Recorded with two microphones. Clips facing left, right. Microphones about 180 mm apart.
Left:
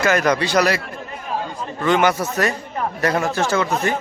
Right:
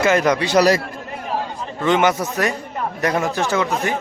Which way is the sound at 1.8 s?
20° right (ahead or behind).